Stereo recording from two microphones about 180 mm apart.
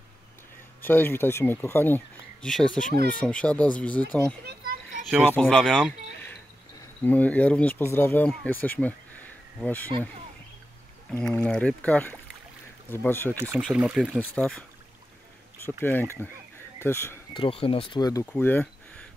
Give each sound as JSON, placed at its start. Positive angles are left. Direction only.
{"t": 0.8, "sound": "speech", "side_deg": 10}
{"t": 4.5, "sound": "children playing", "side_deg": -55}
{"t": 5.0, "sound": "speech", "side_deg": -5}
{"t": 5.3, "sound": "speech", "side_deg": 5}
{"t": 11.1, "sound": "speech", "side_deg": 5}
{"t": 13.6, "sound": "speech", "side_deg": -5}
{"t": 15.8, "sound": "speech", "side_deg": 10}
{"t": 17.3, "sound": "speech", "side_deg": 30}
{"t": 18.2, "sound": "speech", "side_deg": 10}